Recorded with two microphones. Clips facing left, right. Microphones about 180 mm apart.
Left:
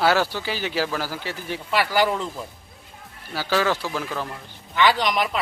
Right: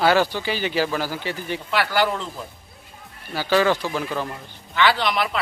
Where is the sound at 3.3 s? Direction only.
5° left (ahead or behind).